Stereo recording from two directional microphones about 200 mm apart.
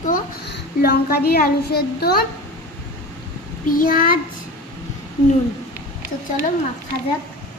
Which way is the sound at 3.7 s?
45° left (ahead or behind).